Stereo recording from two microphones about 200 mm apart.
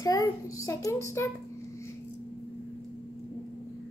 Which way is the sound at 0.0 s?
15° left (ahead or behind).